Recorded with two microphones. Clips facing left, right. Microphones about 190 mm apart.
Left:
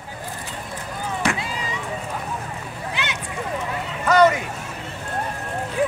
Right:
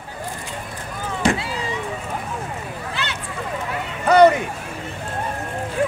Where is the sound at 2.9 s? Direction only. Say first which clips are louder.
Left 1 dB; 15° left (ahead or behind).